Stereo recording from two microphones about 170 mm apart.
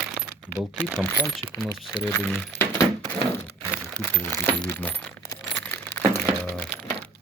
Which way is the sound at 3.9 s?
10° left (ahead or behind).